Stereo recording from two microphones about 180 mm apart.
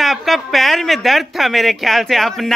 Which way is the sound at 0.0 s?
Centre (ahead or behind).